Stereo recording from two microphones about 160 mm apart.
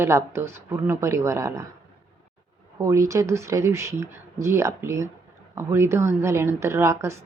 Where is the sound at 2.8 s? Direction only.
20° right (ahead or behind).